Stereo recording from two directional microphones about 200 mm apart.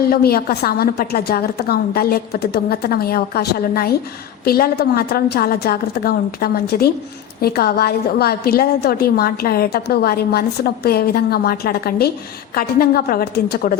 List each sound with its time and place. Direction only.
0.1 s a woman's voice: 50° left (ahead or behind)